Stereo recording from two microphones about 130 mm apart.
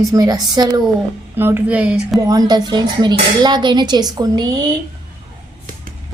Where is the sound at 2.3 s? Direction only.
30° right (ahead or behind).